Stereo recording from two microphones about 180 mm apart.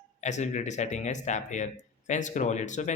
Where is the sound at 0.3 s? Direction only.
40° left (ahead or behind).